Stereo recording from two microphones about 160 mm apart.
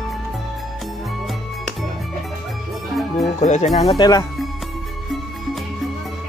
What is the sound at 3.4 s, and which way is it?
Speech, 50° left (ahead or behind).